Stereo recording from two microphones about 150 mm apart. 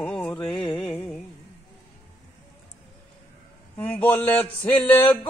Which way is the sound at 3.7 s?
10° left (ahead or behind).